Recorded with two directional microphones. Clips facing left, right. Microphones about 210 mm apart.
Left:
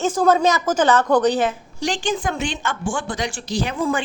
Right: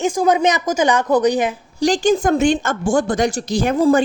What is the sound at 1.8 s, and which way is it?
Speech, 35° right (ahead or behind).